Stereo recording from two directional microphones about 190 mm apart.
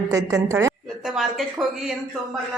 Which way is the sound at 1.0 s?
Centre (ahead or behind).